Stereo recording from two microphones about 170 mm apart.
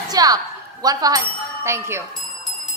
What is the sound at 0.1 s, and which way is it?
A woman's voice, 20° right (ahead or behind).